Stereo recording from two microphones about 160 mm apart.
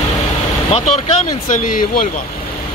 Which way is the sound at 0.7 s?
40° left (ahead or behind).